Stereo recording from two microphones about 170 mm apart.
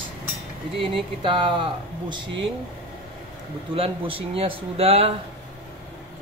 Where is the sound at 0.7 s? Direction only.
30° right (ahead or behind).